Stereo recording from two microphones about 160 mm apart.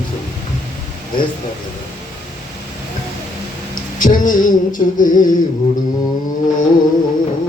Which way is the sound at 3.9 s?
55° left (ahead or behind).